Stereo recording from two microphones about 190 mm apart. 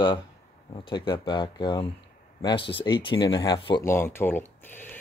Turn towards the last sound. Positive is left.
turn(degrees=10)  # may be behind; listen again after turning